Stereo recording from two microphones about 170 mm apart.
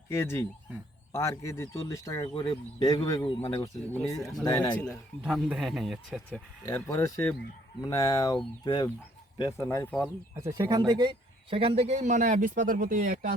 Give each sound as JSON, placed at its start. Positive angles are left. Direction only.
{"t": 0.1, "sound": "a man's voice", "side_deg": 15}
{"t": 4.2, "sound": "speech", "side_deg": 0}
{"t": 4.4, "sound": "speech", "side_deg": 25}
{"t": 5.2, "sound": "speech", "side_deg": -5}
{"t": 6.7, "sound": "a man's voice", "side_deg": 20}
{"t": 9.4, "sound": "a man's voice", "side_deg": 15}
{"t": 10.3, "sound": "a man's voice", "side_deg": -20}